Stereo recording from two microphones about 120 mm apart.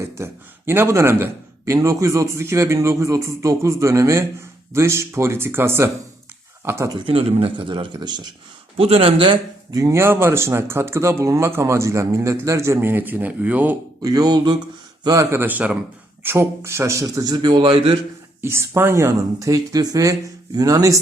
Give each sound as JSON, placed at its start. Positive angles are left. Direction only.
{"t": 0.0, "sound": "a man's voice", "side_deg": -20}
{"t": 7.0, "sound": "speech", "side_deg": -55}
{"t": 8.8, "sound": "speech", "side_deg": -55}
{"t": 9.7, "sound": "a man's voice", "side_deg": -25}
{"t": 14.0, "sound": "a sound", "side_deg": -30}
{"t": 15.0, "sound": "a man's voice", "side_deg": -30}
{"t": 18.4, "sound": "a man's voice", "side_deg": -20}